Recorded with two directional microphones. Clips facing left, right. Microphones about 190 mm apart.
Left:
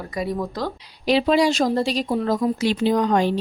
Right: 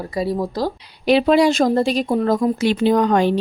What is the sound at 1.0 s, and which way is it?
Speech, 55° right (ahead or behind).